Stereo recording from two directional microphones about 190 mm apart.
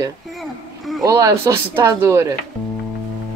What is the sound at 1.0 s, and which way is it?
Speech, 20° right (ahead or behind).